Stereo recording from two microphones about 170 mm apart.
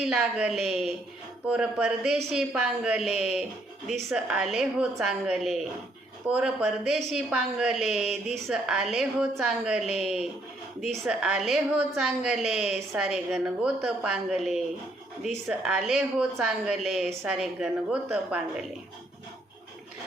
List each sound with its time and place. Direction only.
0.0 s a woman's voice: 5° right (ahead or behind)